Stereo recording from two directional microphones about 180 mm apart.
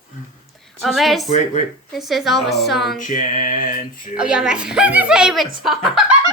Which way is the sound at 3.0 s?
45° left (ahead or behind).